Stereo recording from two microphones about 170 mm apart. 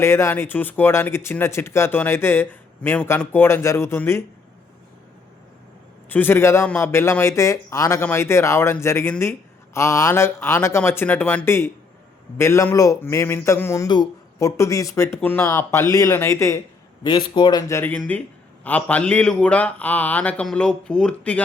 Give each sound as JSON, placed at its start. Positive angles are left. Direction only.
{"t": 0.0, "sound": "speech", "side_deg": 15}
{"t": 6.1, "sound": "speech", "side_deg": 10}
{"t": 17.0, "sound": "speech", "side_deg": 25}